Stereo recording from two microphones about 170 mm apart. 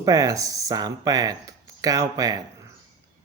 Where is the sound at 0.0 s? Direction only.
20° right (ahead or behind).